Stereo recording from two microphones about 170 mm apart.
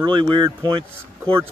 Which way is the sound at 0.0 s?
30° right (ahead or behind).